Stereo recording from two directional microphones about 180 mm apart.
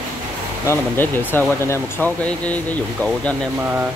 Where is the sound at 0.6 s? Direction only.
15° left (ahead or behind).